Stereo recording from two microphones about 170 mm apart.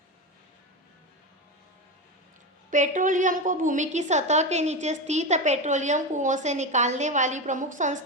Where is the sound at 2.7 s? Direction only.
50° right (ahead or behind).